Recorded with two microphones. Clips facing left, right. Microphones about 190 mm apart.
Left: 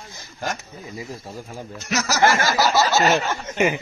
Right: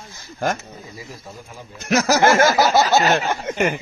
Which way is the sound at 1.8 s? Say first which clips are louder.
Right 4 dB; 55° right (ahead or behind).